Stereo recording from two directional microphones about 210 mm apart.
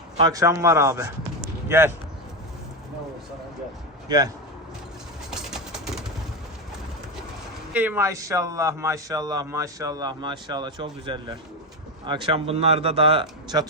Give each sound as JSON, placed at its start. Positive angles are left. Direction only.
{"t": 0.2, "sound": "a man's voice", "side_deg": -15}
{"t": 5.3, "sound": "bird", "side_deg": 0}
{"t": 7.7, "sound": "a man's voice", "side_deg": -10}